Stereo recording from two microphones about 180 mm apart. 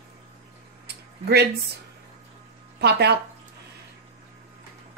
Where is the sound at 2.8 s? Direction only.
65° right (ahead or behind).